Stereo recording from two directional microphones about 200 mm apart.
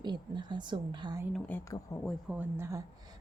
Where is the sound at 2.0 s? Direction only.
5° right (ahead or behind).